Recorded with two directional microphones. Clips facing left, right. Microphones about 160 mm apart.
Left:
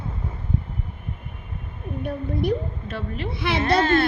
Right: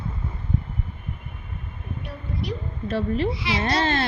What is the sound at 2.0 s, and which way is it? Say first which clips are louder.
A woman's voice: left 8 dB; 55° left (ahead or behind).